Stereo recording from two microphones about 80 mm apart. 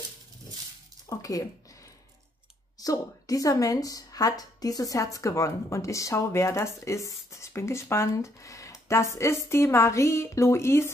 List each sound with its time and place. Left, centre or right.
1.0 s speech: left
2.8 s a woman's voice: left